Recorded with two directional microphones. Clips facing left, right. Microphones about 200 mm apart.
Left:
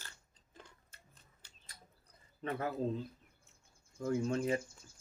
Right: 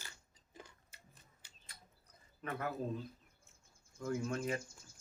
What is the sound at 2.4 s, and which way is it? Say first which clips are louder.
Speech: left 4 dB; 30° left (ahead or behind).